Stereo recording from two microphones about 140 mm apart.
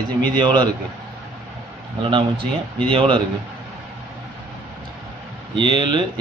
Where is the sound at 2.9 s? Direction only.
35° right (ahead or behind).